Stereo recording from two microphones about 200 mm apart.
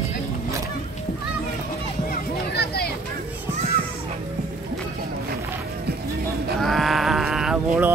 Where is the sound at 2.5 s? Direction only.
50° left (ahead or behind).